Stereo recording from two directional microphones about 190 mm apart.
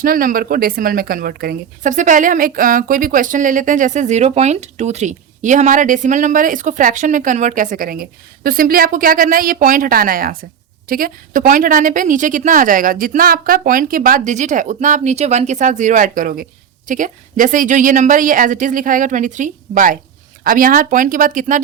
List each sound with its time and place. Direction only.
0.0 s a woman's voice: 45° right (ahead or behind)